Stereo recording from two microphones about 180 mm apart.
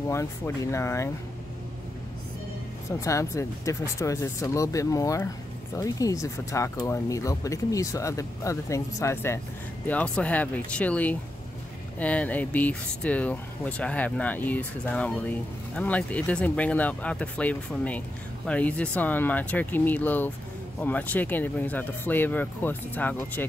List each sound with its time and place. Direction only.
0.1 s speech: 15° left (ahead or behind)
2.9 s speech: 15° left (ahead or behind)